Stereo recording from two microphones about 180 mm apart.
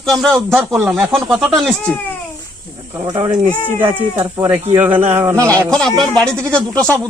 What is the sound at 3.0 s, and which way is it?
Speech, 30° right (ahead or behind).